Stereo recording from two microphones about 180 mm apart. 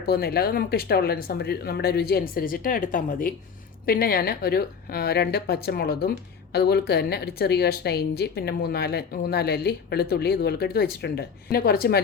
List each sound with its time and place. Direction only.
0.0 s a woman's voice: 60° left (ahead or behind)